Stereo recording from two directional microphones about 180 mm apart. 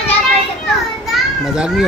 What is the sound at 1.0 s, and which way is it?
Children playing, 5° right (ahead or behind).